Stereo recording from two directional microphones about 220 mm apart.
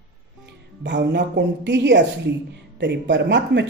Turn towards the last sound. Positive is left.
turn(degrees=-55)  # may be behind; listen again after turning